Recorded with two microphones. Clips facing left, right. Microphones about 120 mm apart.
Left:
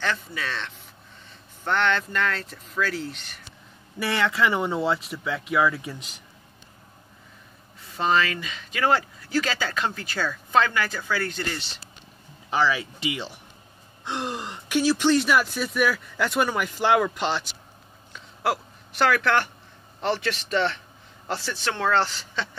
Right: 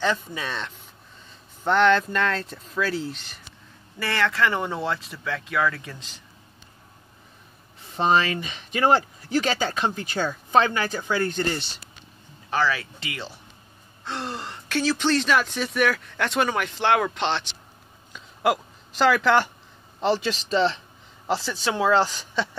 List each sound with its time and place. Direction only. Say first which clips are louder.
0.0 s speech: right 3 dB; 15° right (ahead or behind)
2.1 s speech: right 2 dB; 25° right (ahead or behind)
4.0 s speech: even; 15° left (ahead or behind)
7.9 s speech: right 2 dB; 25° right (ahead or behind)
12.4 s speech: left 1 dB; 15° left (ahead or behind)
18.1 s a sound: right 3 dB; 15° right (ahead or behind)
20.0 s speech: right 3 dB; 15° right (ahead or behind)